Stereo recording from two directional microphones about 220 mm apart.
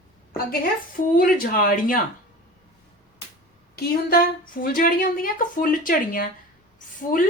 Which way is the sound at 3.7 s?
45° left (ahead or behind).